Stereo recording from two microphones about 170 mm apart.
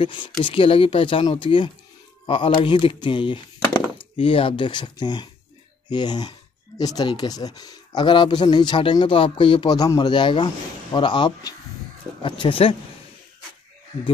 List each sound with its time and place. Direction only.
0.0 s speech: 30° left (ahead or behind)